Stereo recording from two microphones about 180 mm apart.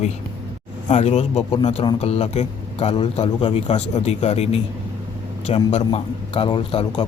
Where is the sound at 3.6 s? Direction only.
40° left (ahead or behind).